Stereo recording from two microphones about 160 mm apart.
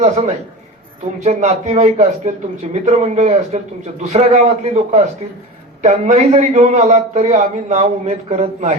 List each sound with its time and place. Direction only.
0.0 s a man's voice: 40° right (ahead or behind)